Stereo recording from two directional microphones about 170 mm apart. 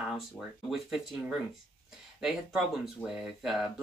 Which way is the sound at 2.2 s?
5° right (ahead or behind).